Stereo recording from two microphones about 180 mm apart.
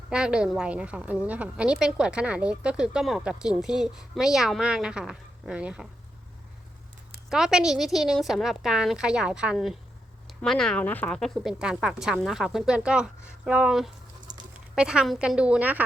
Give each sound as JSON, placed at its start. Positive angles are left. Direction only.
{"t": 0.1, "sound": "a woman's voice", "side_deg": -5}
{"t": 7.3, "sound": "a woman's voice", "side_deg": -5}
{"t": 14.3, "sound": "a sound", "side_deg": -20}
{"t": 14.8, "sound": "a woman's voice", "side_deg": -5}